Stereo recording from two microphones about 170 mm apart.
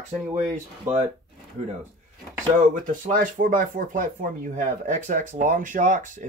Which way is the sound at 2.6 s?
50° right (ahead or behind).